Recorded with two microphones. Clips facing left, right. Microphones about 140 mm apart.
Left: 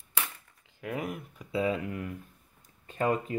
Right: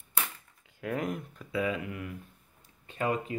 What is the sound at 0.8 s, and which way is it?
Speech, 5° left (ahead or behind).